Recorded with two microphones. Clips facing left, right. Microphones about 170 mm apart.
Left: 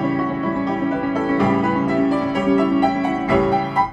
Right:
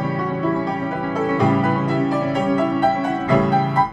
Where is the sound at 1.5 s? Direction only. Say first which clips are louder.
Left 1 dB; centre (ahead or behind).